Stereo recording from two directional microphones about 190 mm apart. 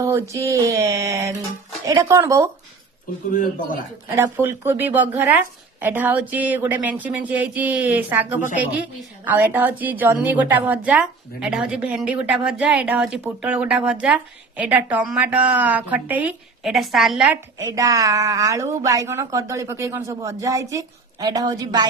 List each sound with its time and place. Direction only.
0.0 s a woman's voice: 15° right (ahead or behind)
3.3 s a man's voice: 45° left (ahead or behind)
4.1 s a woman's voice: 10° right (ahead or behind)
17.6 s a woman's voice: 15° right (ahead or behind)